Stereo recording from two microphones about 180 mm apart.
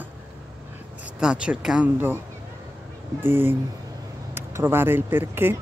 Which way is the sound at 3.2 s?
10° right (ahead or behind).